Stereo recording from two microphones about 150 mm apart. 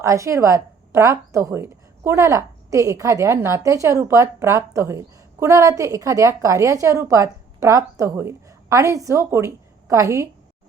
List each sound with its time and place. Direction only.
0.0 s speech: 20° right (ahead or behind)